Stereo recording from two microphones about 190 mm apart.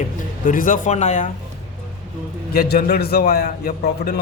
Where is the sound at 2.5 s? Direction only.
50° left (ahead or behind).